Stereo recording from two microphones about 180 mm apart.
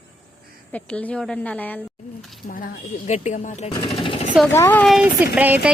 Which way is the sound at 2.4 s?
50° left (ahead or behind).